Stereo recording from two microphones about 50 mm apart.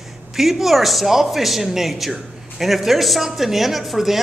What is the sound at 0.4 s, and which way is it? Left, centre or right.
A man's voice, centre.